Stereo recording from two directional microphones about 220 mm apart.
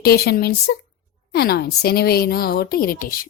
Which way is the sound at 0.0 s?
45° left (ahead or behind).